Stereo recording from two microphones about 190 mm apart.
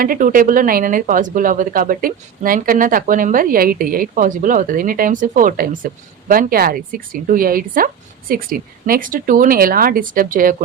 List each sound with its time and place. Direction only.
0.0 s speech: 45° right (ahead or behind)